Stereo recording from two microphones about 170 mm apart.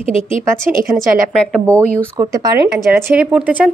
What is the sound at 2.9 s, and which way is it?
Speech, 10° right (ahead or behind).